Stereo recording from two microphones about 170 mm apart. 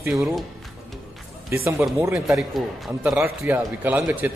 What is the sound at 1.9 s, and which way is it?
Speech, 15° right (ahead or behind).